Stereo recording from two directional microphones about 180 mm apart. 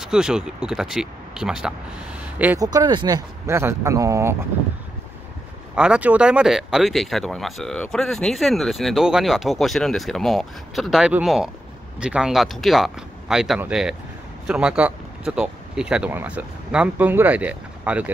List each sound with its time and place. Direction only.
0.0 s speech: 5° right (ahead or behind)
2.6 s speech: 20° right (ahead or behind)
5.8 s speech: 5° right (ahead or behind)